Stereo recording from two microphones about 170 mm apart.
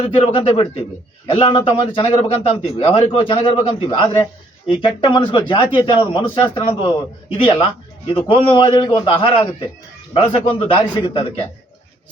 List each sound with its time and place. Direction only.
0.0 s a man's voice: 30° left (ahead or behind)
7.4 s a man's voice: 30° left (ahead or behind)